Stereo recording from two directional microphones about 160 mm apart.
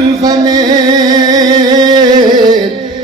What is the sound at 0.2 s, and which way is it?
Music, 25° right (ahead or behind).